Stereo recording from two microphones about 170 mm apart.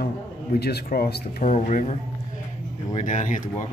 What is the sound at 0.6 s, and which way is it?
Speech, 70° left (ahead or behind).